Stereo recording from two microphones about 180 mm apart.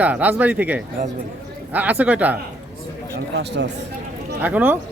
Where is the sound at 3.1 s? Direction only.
70° right (ahead or behind).